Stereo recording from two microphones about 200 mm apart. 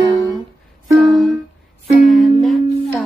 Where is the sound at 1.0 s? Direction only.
Centre (ahead or behind).